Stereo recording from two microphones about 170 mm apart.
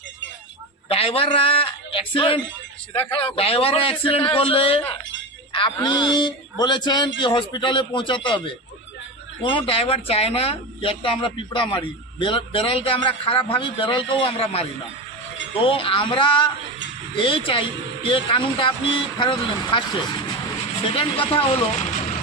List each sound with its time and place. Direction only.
0.9 s speech: 35° left (ahead or behind)
5.5 s a sound: 30° left (ahead or behind)
5.8 s a man's voice: 25° left (ahead or behind)
20.9 s speech: 30° left (ahead or behind)